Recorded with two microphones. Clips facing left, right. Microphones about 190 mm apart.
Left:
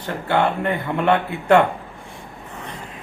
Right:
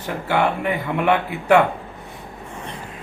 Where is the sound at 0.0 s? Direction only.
10° right (ahead or behind).